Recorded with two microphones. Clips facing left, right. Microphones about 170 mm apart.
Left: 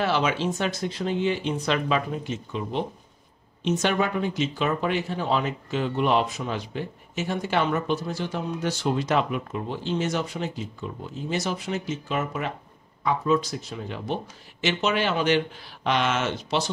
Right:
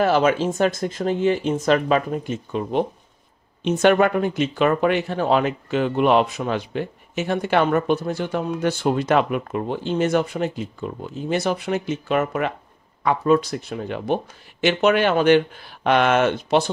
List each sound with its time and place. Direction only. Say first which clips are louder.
0.0 s speech: right 6 dB; 45° right (ahead or behind)